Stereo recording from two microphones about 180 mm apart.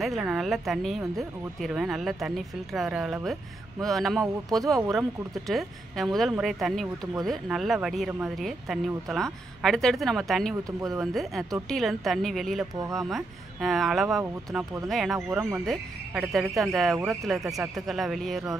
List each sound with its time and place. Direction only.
0.0 s speech: centre (ahead or behind)
14.6 s speech: 20° right (ahead or behind)
14.9 s speech: centre (ahead or behind)
15.1 s speech: 10° right (ahead or behind)